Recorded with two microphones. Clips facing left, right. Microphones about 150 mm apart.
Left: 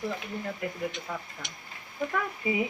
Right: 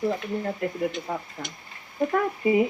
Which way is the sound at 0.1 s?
40° right (ahead or behind).